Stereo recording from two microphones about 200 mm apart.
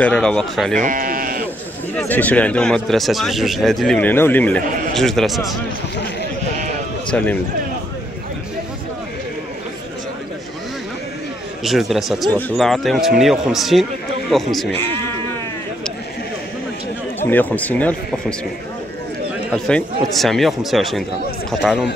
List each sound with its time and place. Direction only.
0.0 s speech: 5° left (ahead or behind)
0.7 s sheep: 45° right (ahead or behind)
2.0 s speech: 10° left (ahead or behind)
11.6 s speech: centre (ahead or behind)
17.2 s speech: 10° left (ahead or behind)
19.5 s speech: 5° left (ahead or behind)